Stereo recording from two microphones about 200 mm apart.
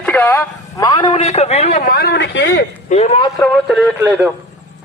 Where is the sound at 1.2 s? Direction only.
35° left (ahead or behind).